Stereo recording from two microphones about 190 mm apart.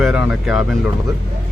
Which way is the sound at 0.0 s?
5° right (ahead or behind).